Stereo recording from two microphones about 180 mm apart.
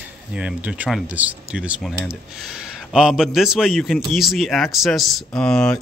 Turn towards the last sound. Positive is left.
turn(degrees=5)  # may be behind; listen again after turning